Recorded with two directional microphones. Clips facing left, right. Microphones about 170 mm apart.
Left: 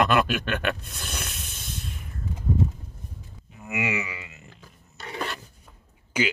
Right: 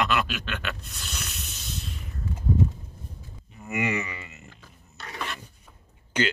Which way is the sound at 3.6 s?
5° left (ahead or behind).